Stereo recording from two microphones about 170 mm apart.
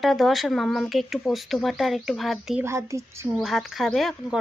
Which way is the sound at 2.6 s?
15° right (ahead or behind).